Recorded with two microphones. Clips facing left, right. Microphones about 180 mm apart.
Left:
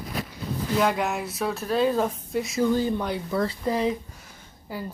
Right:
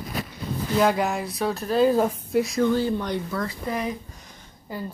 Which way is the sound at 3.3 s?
30° left (ahead or behind).